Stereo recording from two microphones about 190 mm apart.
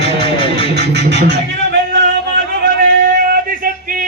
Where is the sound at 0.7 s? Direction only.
60° right (ahead or behind).